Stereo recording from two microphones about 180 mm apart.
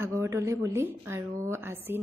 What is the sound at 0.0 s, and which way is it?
A woman's voice, 15° right (ahead or behind).